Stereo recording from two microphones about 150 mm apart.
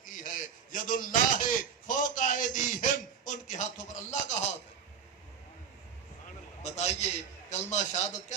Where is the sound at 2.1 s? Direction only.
60° left (ahead or behind).